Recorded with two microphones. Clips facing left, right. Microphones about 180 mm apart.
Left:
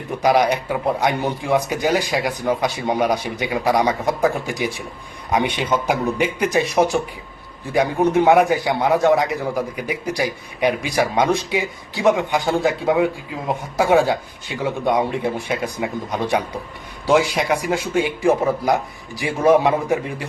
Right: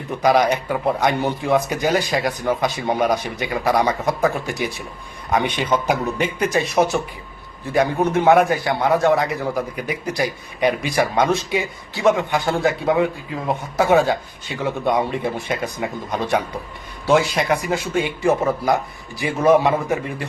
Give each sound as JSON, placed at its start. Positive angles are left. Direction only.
{"t": 0.2, "sound": "a man's voice", "side_deg": 10}
{"t": 8.0, "sound": "a man's voice", "side_deg": 15}